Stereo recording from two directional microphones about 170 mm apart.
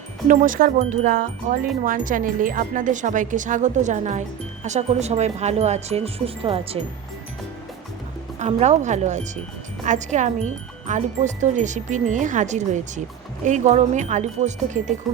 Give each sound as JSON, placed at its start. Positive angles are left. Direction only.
{"t": 0.3, "sound": "chime", "side_deg": -50}
{"t": 4.6, "sound": "speech", "side_deg": -40}
{"t": 8.4, "sound": "chime", "side_deg": -40}